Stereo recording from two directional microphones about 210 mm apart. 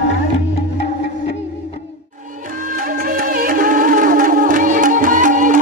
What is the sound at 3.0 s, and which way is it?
Music, 45° right (ahead or behind).